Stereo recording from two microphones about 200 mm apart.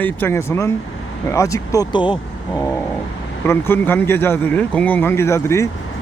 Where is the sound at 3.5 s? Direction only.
10° left (ahead or behind).